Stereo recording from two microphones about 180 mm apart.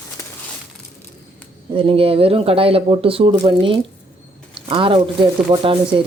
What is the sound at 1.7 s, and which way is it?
Speech, 30° right (ahead or behind).